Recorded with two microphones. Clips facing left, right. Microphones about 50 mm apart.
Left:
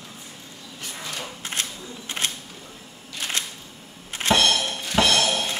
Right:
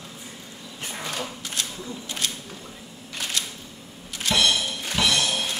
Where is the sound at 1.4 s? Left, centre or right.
Left.